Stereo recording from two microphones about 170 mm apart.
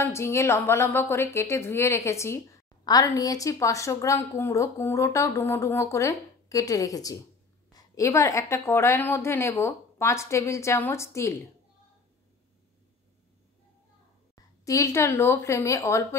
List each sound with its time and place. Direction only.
0.0 s a woman's voice: 15° left (ahead or behind)
14.3 s speech: 20° left (ahead or behind)